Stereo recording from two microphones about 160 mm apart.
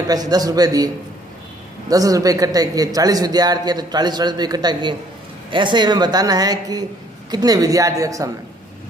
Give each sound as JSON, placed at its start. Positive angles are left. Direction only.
{"t": 0.1, "sound": "a man's voice", "side_deg": -25}